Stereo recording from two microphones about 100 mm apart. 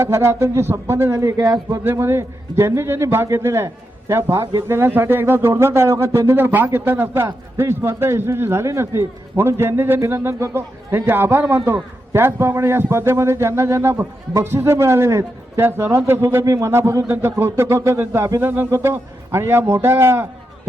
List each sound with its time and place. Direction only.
0.0 s a man's voice: 25° right (ahead or behind)